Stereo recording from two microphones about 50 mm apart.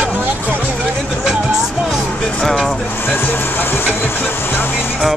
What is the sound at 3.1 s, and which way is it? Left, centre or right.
Music, left.